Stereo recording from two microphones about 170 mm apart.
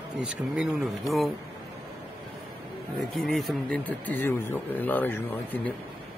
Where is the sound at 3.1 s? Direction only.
Centre (ahead or behind).